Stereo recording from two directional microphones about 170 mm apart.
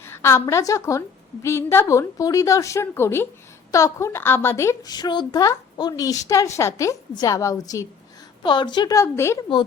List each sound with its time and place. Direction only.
0.0 s a woman's voice: 15° left (ahead or behind)